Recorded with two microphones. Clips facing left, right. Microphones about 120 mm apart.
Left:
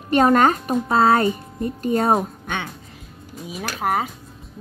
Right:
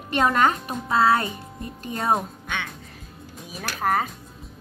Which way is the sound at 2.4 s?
45° left (ahead or behind).